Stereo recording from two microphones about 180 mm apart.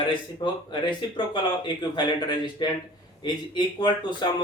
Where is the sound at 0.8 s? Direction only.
25° left (ahead or behind).